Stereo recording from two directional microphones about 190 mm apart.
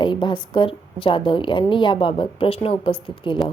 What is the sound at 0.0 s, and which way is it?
Speech, 25° left (ahead or behind).